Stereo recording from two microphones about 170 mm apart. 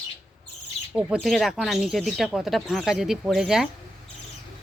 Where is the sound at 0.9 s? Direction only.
Centre (ahead or behind).